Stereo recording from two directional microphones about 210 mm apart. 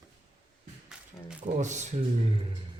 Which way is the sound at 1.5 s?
35° right (ahead or behind).